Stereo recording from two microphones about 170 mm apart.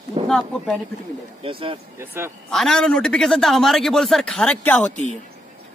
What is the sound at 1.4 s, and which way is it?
Speech, 30° right (ahead or behind).